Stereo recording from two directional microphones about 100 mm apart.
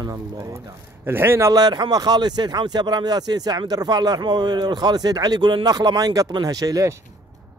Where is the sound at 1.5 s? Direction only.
45° right (ahead or behind).